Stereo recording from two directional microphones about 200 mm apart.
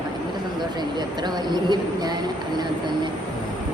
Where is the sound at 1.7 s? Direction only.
20° right (ahead or behind).